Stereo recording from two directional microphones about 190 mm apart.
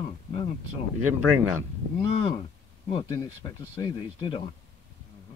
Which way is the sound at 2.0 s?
30° left (ahead or behind).